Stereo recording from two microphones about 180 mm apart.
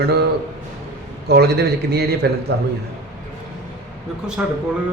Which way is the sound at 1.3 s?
65° right (ahead or behind).